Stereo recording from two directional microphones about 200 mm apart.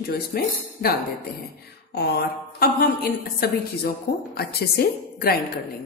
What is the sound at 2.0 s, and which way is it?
A woman's voice, 55° left (ahead or behind).